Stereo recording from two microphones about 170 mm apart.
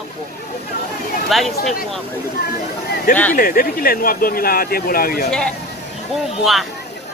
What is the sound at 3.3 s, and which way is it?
Speech, 60° left (ahead or behind).